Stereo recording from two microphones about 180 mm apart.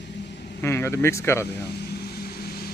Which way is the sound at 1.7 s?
65° left (ahead or behind).